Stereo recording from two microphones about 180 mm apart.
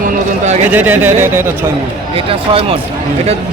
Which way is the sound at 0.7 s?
10° right (ahead or behind).